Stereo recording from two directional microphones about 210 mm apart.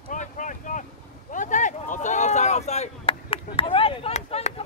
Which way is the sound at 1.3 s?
35° left (ahead or behind).